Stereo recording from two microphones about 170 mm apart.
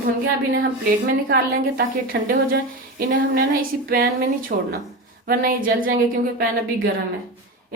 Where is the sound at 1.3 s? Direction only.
60° right (ahead or behind).